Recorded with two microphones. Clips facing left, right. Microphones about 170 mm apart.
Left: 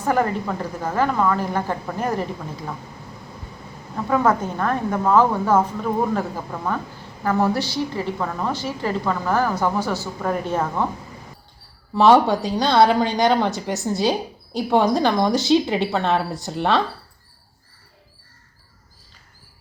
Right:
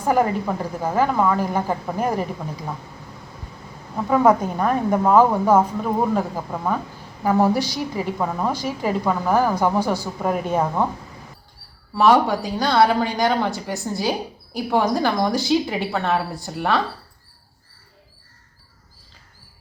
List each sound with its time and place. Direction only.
0.0 s a woman's voice: 10° right (ahead or behind)
4.1 s a woman's voice: 10° right (ahead or behind)
11.9 s a woman's voice: 25° left (ahead or behind)